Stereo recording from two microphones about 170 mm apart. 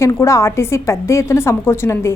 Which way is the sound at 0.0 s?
15° left (ahead or behind).